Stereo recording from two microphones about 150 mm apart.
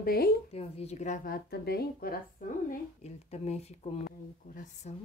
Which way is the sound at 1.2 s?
85° left.